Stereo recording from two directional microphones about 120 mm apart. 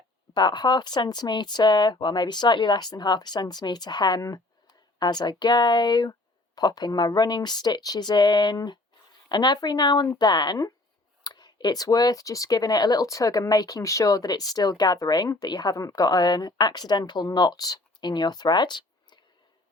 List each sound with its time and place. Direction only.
0.3 s speech: 35° left (ahead or behind)